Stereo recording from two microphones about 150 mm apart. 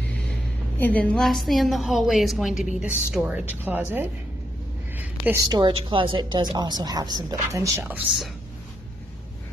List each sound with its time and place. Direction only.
0.7 s a woman's voice: 10° left (ahead or behind); by 8.0 s 20° right (ahead or behind)